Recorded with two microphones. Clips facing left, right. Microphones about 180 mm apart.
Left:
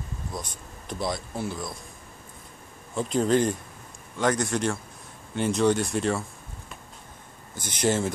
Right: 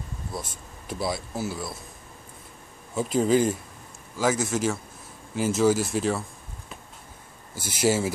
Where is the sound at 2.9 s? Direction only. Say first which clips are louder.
Right 1 dB; 5° right (ahead or behind).